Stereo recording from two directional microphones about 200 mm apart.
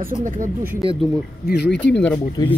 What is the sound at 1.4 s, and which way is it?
Speech, 55° left (ahead or behind).